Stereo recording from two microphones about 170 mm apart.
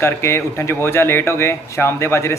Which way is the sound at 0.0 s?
15° left (ahead or behind).